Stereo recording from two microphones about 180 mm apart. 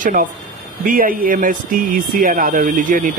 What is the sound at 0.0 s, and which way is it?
Speech, 50° right (ahead or behind).